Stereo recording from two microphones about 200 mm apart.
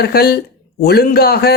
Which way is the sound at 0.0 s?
50° left (ahead or behind).